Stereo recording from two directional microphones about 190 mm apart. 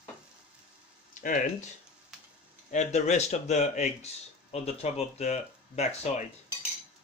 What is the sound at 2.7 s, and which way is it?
Speech, 35° left (ahead or behind).